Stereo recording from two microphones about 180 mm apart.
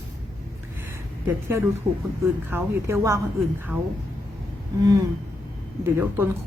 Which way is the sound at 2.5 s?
15° right (ahead or behind).